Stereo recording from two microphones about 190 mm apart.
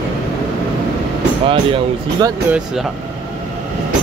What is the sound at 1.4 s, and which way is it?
Speech, 25° right (ahead or behind).